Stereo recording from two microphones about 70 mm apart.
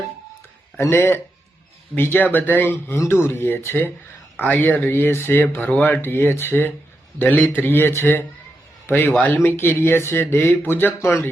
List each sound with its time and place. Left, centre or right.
0.8 s speech: left